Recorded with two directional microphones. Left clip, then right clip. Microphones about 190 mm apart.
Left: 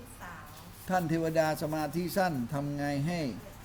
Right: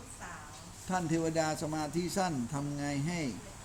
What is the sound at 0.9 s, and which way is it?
A woman's voice, 30° left (ahead or behind).